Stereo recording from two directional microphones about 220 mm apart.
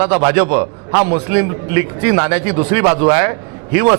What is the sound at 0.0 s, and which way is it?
A man's voice, 25° right (ahead or behind).